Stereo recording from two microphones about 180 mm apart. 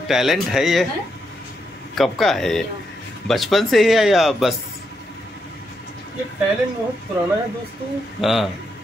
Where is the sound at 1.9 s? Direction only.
Centre (ahead or behind).